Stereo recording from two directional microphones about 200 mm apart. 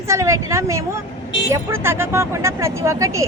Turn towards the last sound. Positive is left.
turn(degrees=-15)  # may be behind; listen again after turning